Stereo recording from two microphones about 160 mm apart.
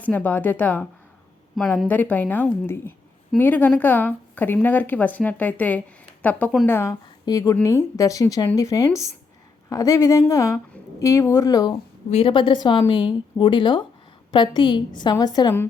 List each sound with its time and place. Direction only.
0.0 s a woman's voice: 10° left (ahead or behind)
12.1 s a woman's voice: 35° left (ahead or behind)